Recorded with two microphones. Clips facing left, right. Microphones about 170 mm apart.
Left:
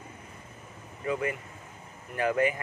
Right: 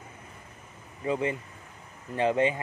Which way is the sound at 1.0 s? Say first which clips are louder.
Right 2 dB; 25° right (ahead or behind).